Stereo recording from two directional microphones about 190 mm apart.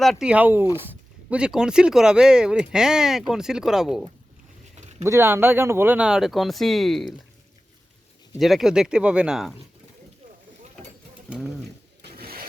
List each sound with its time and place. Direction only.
0.0 s speech: centre (ahead or behind)
4.8 s a sound: 35° right (ahead or behind)
5.0 s speech: 15° right (ahead or behind)
8.4 s speech: centre (ahead or behind)
11.3 s speech: 5° right (ahead or behind)
12.1 s sewing machine: 50° right (ahead or behind)